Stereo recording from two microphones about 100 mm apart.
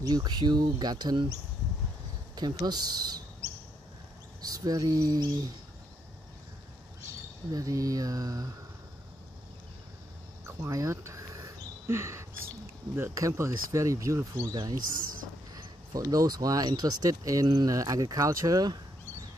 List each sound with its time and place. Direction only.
0.0 s speech: 45° right (ahead or behind)
2.3 s speech: 45° right (ahead or behind)
4.4 s speech: 40° right (ahead or behind)
7.5 s speech: 35° right (ahead or behind)
10.4 s a sound: 30° right (ahead or behind)
12.9 s speech: 30° right (ahead or behind)